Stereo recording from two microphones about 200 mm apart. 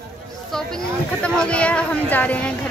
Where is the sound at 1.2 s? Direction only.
5° left (ahead or behind).